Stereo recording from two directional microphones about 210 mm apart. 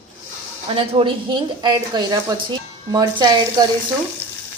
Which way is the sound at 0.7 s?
25° right (ahead or behind).